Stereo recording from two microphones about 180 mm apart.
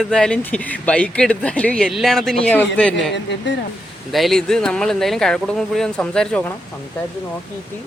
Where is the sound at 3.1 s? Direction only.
75° left (ahead or behind).